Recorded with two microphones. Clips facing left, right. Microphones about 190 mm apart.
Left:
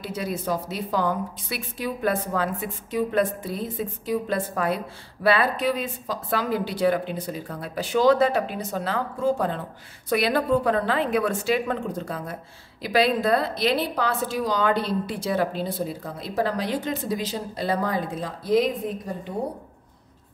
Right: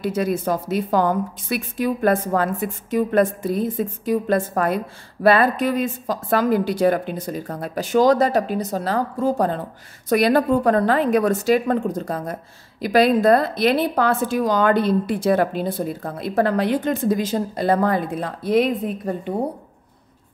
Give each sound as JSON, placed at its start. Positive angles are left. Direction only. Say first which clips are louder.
{"t": 0.0, "sound": "a woman's voice", "louder": "right 7 dB", "side_deg": -50}